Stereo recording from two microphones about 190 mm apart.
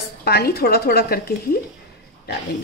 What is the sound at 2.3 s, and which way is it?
Speech, 60° left (ahead or behind).